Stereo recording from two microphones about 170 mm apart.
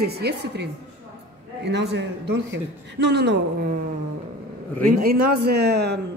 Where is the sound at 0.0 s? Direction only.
70° right (ahead or behind); by 3.3 s 90° right.